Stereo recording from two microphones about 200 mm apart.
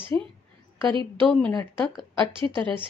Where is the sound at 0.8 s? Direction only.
25° right (ahead or behind).